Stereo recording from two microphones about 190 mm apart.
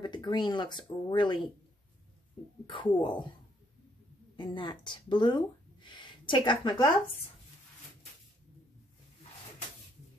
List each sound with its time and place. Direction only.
0.0 s speech: 25° left (ahead or behind)
2.6 s speech: 25° left (ahead or behind)
4.4 s speech: 25° left (ahead or behind)